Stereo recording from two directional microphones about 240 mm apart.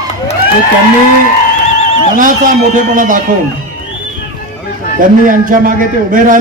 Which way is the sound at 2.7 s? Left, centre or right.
Right.